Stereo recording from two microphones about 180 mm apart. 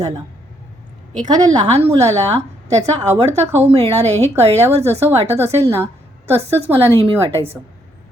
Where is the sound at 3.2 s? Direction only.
35° right (ahead or behind).